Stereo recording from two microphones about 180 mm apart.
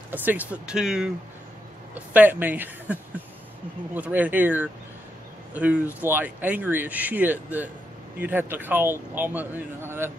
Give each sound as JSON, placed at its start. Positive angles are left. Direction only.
{"t": 0.1, "sound": "a man's voice", "side_deg": -10}